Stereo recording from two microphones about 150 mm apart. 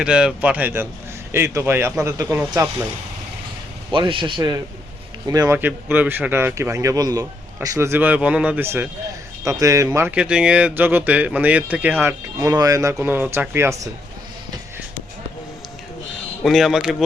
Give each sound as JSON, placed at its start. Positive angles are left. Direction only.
{"t": 0.0, "sound": "speech", "side_deg": -5}
{"t": 3.9, "sound": "a man's voice", "side_deg": -35}
{"t": 5.5, "sound": "speech", "side_deg": -10}
{"t": 16.4, "sound": "speech", "side_deg": 0}